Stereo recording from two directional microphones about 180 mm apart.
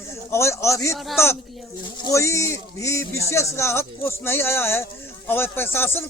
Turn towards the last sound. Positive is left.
turn(degrees=10)  # may be behind; listen again after turning